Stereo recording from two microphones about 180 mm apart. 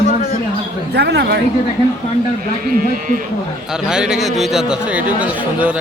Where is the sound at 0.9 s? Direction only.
65° right (ahead or behind).